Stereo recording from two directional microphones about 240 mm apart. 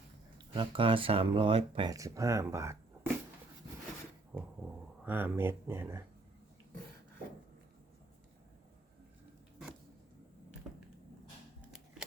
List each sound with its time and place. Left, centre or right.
0.5 s speech: right
4.3 s a sound: centre
5.0 s speech: centre